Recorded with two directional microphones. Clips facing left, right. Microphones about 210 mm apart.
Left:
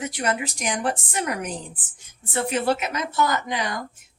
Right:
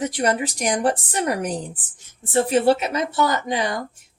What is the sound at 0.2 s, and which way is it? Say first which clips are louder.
A woman's voice: right 4 dB; 35° right (ahead or behind).